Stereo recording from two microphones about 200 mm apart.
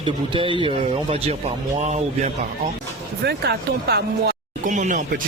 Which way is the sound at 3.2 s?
55° right (ahead or behind).